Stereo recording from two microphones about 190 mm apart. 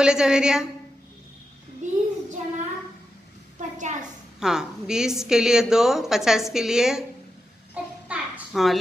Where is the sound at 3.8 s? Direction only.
40° right (ahead or behind).